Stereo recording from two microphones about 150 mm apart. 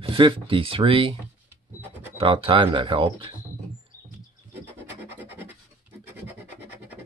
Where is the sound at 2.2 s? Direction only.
35° right (ahead or behind).